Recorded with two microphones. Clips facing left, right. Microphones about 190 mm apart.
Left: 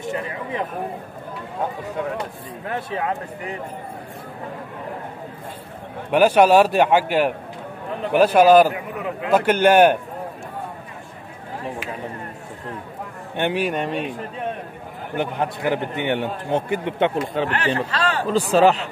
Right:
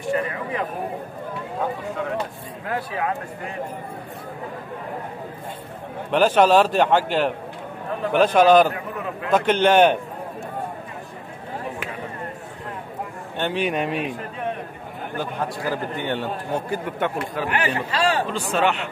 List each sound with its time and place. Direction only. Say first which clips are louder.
0.1 s a man's voice: right 4 dB; 20° left (ahead or behind)
2.6 s a man's voice: even; 20° left (ahead or behind)
6.1 s a man's voice: left 2 dB; 10° left (ahead or behind)
13.4 s a man's voice: left 2 dB; 15° left (ahead or behind)
13.7 s speech: even; centre (ahead or behind)
15.1 s a man's voice: left 4 dB; 20° left (ahead or behind)
17.5 s speech: left 1 dB; 10° right (ahead or behind)
18.3 s a man's voice: left 6 dB; 35° left (ahead or behind)